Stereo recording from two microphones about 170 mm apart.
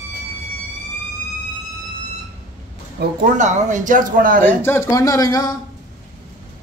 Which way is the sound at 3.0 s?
50° right (ahead or behind).